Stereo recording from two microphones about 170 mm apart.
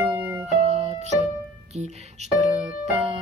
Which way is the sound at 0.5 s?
35° right (ahead or behind).